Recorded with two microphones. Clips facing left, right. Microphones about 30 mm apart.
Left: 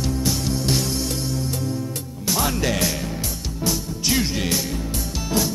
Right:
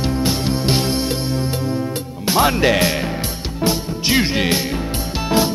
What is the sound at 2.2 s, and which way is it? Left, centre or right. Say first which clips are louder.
Speech: right 7 dB; right.